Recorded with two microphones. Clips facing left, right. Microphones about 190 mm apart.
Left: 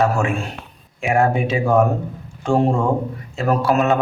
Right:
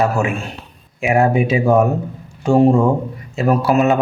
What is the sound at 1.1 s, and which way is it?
A man's voice, 15° right (ahead or behind).